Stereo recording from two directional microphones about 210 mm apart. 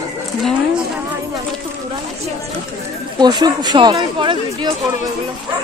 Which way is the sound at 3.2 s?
20° right (ahead or behind).